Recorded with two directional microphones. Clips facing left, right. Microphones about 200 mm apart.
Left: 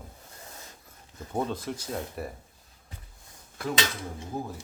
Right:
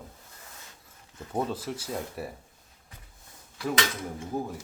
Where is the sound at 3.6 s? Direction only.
50° left (ahead or behind).